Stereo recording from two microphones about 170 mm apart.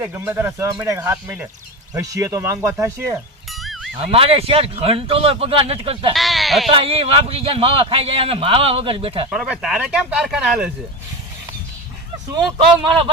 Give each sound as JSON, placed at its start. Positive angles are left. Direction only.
{"t": 0.0, "sound": "speech", "side_deg": -10}
{"t": 3.6, "sound": "music", "side_deg": 0}
{"t": 3.9, "sound": "a man's voice", "side_deg": -35}
{"t": 6.1, "sound": "sheep", "side_deg": 0}
{"t": 6.7, "sound": "a man's voice", "side_deg": -35}
{"t": 9.3, "sound": "speech", "side_deg": -5}
{"t": 12.5, "sound": "a man's voice", "side_deg": -30}